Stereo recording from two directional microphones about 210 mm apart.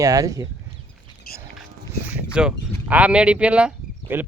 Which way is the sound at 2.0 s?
5° right (ahead or behind).